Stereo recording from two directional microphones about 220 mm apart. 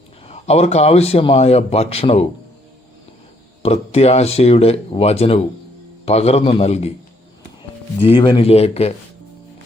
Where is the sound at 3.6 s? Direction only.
30° left (ahead or behind).